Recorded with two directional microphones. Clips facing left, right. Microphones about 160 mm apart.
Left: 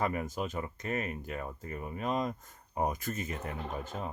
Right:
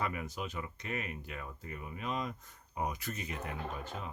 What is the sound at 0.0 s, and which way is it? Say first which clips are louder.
Speech: left 5 dB; 45° left (ahead or behind).